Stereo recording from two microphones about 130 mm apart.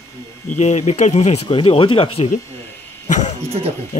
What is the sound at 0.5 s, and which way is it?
Speech, 60° left (ahead or behind).